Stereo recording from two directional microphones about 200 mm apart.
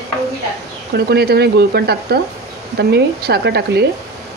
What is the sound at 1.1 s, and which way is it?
Speech, 55° right (ahead or behind).